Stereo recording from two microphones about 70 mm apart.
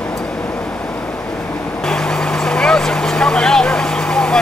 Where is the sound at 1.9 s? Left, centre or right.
Centre.